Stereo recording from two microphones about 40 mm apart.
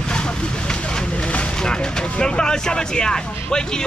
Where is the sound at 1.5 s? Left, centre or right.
Centre.